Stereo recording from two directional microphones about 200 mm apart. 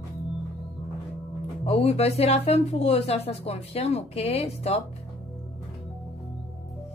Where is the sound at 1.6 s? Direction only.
30° left (ahead or behind).